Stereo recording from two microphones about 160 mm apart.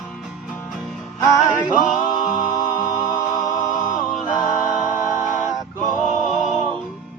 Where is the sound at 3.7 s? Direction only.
55° left (ahead or behind).